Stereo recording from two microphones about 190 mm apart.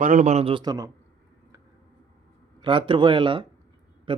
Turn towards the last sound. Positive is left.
turn(degrees=-25)  # may be behind; listen again after turning